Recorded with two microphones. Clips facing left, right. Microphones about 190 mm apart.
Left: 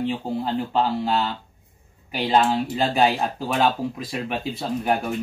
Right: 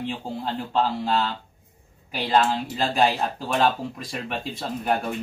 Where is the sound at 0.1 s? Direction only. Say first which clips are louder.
Left 5 dB; 5° left (ahead or behind).